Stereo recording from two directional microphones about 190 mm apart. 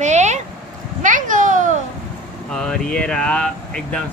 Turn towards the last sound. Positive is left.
turn(degrees=5)  # may be behind; listen again after turning